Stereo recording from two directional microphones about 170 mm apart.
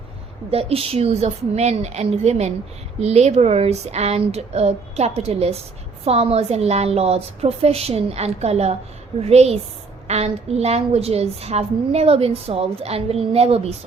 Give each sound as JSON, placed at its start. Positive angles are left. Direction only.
{"t": 0.5, "sound": "a woman's voice", "side_deg": -35}